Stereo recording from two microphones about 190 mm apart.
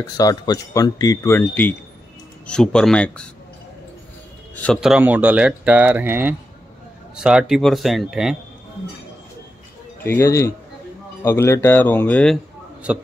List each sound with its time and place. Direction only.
0.0 s speech: 20° left (ahead or behind); by 3.3 s 5° left (ahead or behind)
4.6 s speech: centre (ahead or behind)
10.0 s speech: 15° left (ahead or behind)
12.9 s speech: 5° right (ahead or behind)